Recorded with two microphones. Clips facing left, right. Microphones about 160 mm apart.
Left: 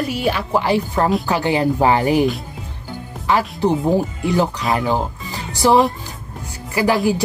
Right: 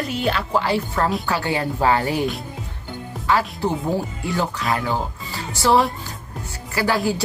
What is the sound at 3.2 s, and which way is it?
Speech, 15° left (ahead or behind).